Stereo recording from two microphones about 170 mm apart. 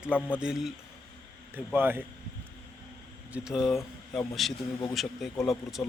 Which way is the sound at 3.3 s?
5° right (ahead or behind).